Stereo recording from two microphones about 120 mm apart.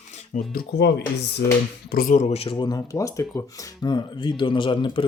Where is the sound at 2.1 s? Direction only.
55° left (ahead or behind).